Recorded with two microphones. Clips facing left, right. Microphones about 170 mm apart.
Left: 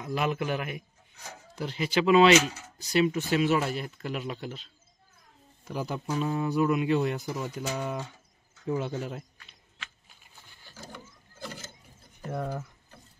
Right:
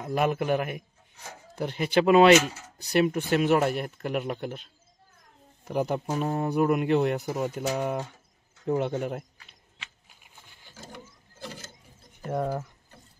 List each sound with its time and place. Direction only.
0.0 s speech: 50° right (ahead or behind)
5.7 s speech: 60° right (ahead or behind)
6.0 s speech: 50° right (ahead or behind)
12.3 s speech: 40° right (ahead or behind)